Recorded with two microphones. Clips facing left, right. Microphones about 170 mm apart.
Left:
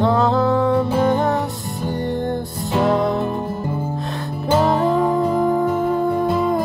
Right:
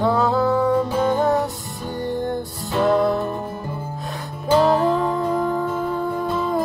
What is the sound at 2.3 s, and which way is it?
Music, 15° left (ahead or behind).